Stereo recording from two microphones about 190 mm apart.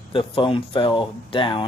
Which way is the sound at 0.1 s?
25° left (ahead or behind).